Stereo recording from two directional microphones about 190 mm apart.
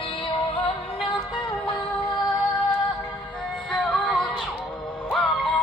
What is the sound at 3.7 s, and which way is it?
Music, 5° left (ahead or behind).